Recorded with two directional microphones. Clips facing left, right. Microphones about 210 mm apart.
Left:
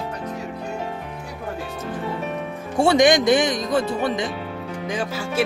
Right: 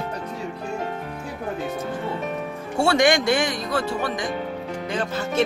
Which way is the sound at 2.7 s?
20° left (ahead or behind).